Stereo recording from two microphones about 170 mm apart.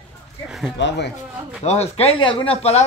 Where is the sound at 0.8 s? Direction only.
90° left.